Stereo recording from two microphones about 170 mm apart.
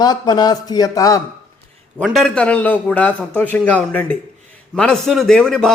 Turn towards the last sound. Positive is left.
turn(degrees=5)  # may be behind; listen again after turning